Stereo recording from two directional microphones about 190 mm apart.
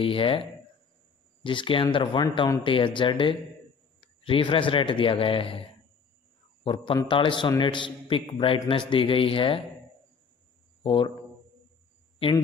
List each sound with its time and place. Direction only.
0.0 s a man's voice: 30° left (ahead or behind)
1.4 s a man's voice: 25° left (ahead or behind)
10.8 s speech: 25° left (ahead or behind)